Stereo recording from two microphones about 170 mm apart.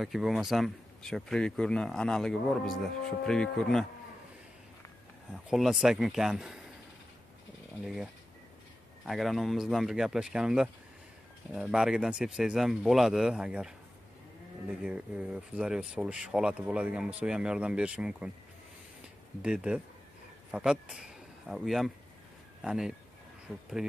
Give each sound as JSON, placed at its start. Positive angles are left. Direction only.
{"t": 0.0, "sound": "speech", "side_deg": 0}
{"t": 5.3, "sound": "speech", "side_deg": -5}
{"t": 7.8, "sound": "speech", "side_deg": 0}
{"t": 19.4, "sound": "speech", "side_deg": -5}